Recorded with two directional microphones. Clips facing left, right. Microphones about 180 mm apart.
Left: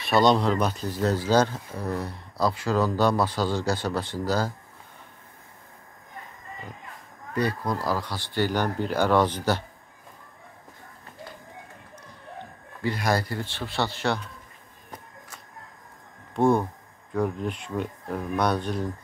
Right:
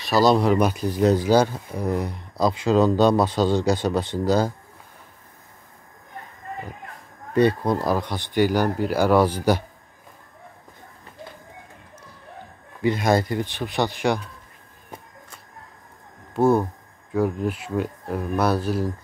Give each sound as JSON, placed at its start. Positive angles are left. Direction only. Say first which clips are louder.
{"t": 0.0, "sound": "speech", "louder": "right 2 dB", "side_deg": -5}
{"t": 7.3, "sound": "speech", "louder": "right 8 dB", "side_deg": -25}
{"t": 12.8, "sound": "speech", "louder": "right 6 dB", "side_deg": -20}
{"t": 16.3, "sound": "speech", "louder": "right 3 dB", "side_deg": -5}